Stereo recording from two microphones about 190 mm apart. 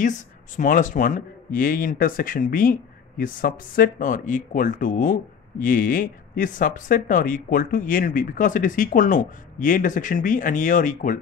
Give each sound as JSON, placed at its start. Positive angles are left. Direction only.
{"t": 0.0, "sound": "speech", "side_deg": 40}